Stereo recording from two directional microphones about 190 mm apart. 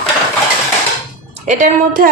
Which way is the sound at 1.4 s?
40° right (ahead or behind).